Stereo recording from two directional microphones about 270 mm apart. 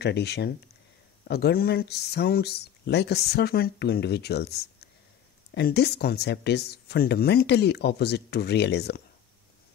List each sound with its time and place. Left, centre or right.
0.0 s speech: left